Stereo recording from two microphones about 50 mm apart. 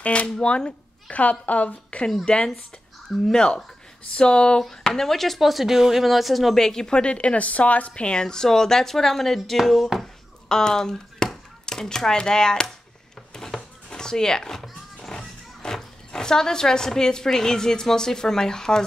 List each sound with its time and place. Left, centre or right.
0.0 s speech: left
1.1 s a woman's voice: left
4.6 s speech: centre
10.5 s speech: centre
13.3 s music: centre